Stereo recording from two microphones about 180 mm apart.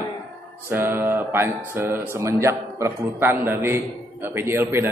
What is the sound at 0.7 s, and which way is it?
A woman's voice, 10° right (ahead or behind).